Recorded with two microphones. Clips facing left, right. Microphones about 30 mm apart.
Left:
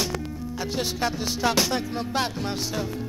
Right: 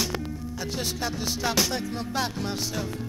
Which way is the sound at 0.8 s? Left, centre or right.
Centre.